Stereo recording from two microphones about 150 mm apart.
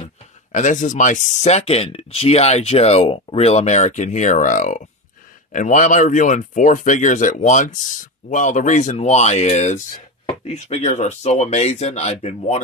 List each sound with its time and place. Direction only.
0.5 s speech: 55° left (ahead or behind)